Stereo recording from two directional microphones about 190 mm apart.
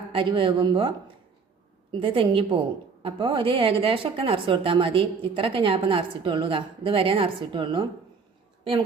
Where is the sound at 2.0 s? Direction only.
25° right (ahead or behind).